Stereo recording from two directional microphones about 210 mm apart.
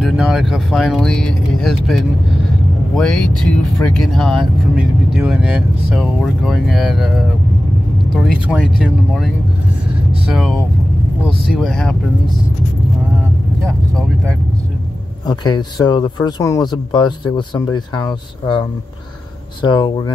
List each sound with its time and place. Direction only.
0.0 s speech: centre (ahead or behind)
8.5 s speech: 5° right (ahead or behind)
13.7 s speech: 5° left (ahead or behind)
15.2 s speech: 20° left (ahead or behind)
19.6 s speech: 20° left (ahead or behind)